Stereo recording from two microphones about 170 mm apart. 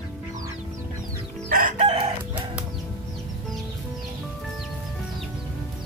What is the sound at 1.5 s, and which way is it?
Chicken, 45° right (ahead or behind).